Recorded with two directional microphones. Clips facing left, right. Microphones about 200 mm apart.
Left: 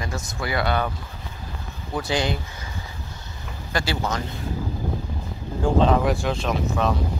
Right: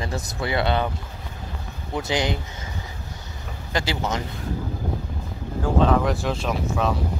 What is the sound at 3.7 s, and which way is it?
Speech, 20° right (ahead or behind).